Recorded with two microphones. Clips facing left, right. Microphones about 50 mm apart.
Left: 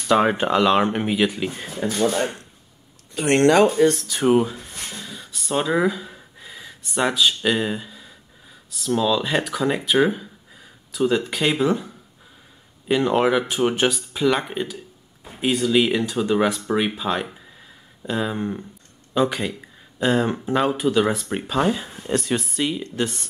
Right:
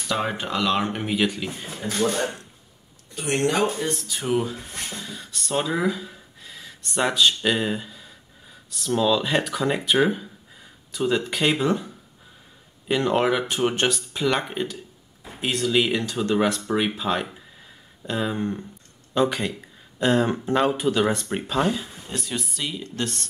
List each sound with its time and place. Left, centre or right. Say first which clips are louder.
0.1 s speech: left 8 dB; left
0.7 s speech: left 5 dB; left
1.1 s speech: left 3 dB; centre
3.2 s speech: left 7 dB; left
4.4 s speech: left 4 dB; centre
22.0 s speech: left 8 dB; left
22.6 s speech: left 5 dB; left